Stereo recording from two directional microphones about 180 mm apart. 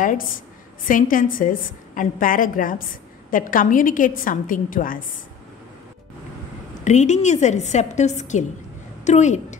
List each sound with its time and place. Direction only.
0.8 s a woman's voice: 50° left (ahead or behind)
6.8 s a woman's voice: 40° left (ahead or behind)